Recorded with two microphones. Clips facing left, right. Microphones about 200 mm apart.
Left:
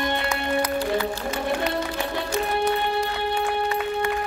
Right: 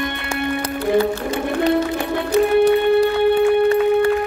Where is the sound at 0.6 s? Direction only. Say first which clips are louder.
Right 9 dB; 30° right (ahead or behind).